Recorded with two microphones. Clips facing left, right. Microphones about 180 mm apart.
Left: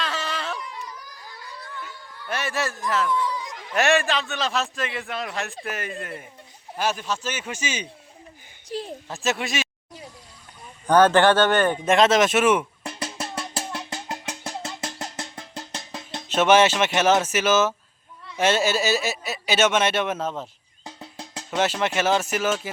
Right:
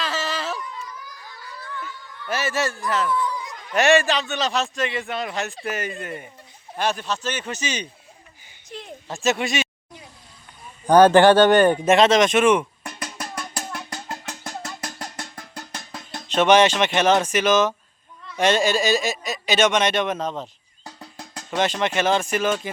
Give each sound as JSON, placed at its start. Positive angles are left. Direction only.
{"t": 0.0, "sound": "a sound", "side_deg": 0}
{"t": 2.2, "sound": "a man's voice", "side_deg": 0}
{"t": 3.3, "sound": "a sound", "side_deg": 10}
{"t": 3.8, "sound": "a man's voice", "side_deg": 0}
{"t": 8.7, "sound": "a woman's voice", "side_deg": 35}
{"t": 9.0, "sound": "a man's voice", "side_deg": 0}
{"t": 10.8, "sound": "speech", "side_deg": -10}
{"t": 11.9, "sound": "a man's voice", "side_deg": 0}
{"t": 12.8, "sound": "music", "side_deg": 25}
{"t": 16.3, "sound": "speech", "side_deg": 5}
{"t": 20.8, "sound": "drum", "side_deg": 20}
{"t": 21.5, "sound": "speech", "side_deg": 5}